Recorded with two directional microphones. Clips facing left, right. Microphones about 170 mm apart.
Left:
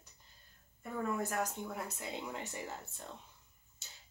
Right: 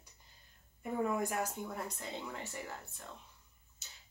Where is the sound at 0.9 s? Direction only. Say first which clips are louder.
Right 2 dB; 15° right (ahead or behind).